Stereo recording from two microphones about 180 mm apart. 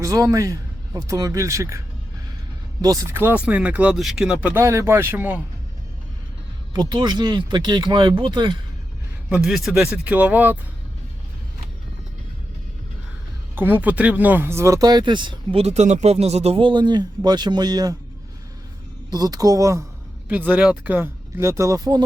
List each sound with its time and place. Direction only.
0.0 s speech: 20° right (ahead or behind)
2.8 s a man's voice: 20° right (ahead or behind)
6.7 s speech: 25° right (ahead or behind)
9.3 s a man's voice: centre (ahead or behind)
13.6 s speech: 10° right (ahead or behind)
19.1 s a man's voice: 20° right (ahead or behind)